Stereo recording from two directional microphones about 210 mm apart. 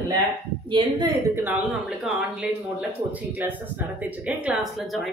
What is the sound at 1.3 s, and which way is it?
Speech, 10° right (ahead or behind).